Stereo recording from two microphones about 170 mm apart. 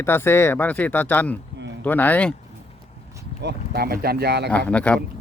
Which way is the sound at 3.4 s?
70° right (ahead or behind).